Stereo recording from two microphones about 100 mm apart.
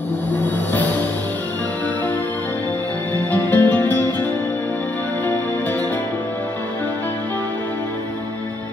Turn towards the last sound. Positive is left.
turn(degrees=20)  # may be behind; listen again after turning